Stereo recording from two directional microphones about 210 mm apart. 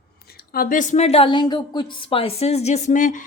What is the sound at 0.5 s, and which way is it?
A woman's voice, 40° left (ahead or behind).